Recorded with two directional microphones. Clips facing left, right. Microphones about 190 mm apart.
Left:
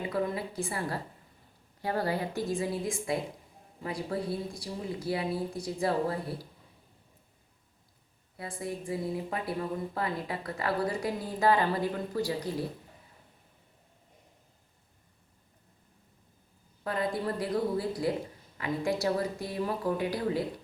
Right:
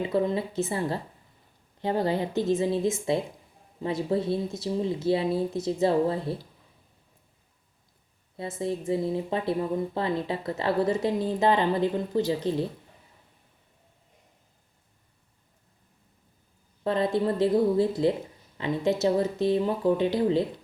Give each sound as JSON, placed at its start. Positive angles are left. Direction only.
{"t": 0.0, "sound": "speech", "side_deg": -25}
{"t": 8.4, "sound": "speech", "side_deg": -25}
{"t": 16.8, "sound": "speech", "side_deg": -25}